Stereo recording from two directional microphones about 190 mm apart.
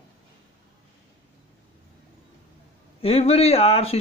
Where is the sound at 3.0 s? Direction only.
30° left (ahead or behind).